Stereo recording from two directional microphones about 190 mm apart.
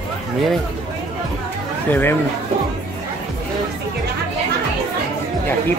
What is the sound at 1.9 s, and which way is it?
Speech, 10° left (ahead or behind).